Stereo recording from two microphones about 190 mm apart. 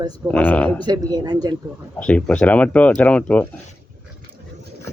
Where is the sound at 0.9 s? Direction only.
20° right (ahead or behind).